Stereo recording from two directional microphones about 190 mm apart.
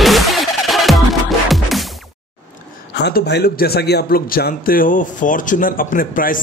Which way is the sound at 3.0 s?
60° left (ahead or behind).